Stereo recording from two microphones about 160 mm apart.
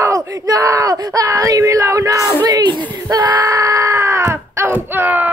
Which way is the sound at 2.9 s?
25° right (ahead or behind).